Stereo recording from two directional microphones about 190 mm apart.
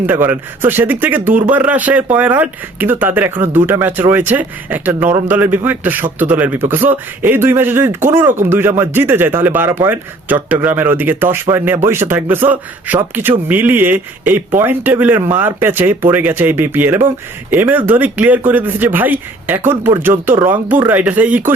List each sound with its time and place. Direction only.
0.0 s a man's voice: 10° right (ahead or behind)